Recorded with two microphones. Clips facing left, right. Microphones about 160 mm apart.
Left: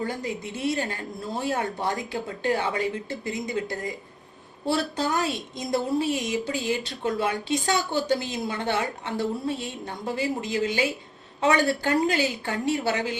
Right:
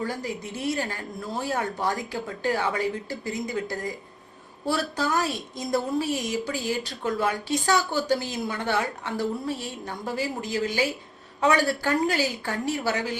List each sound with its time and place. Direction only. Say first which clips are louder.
0.0 s a woman's voice: left 1 dB; 20° left (ahead or behind)
4.9 s a woman's voice: even; 20° left (ahead or behind)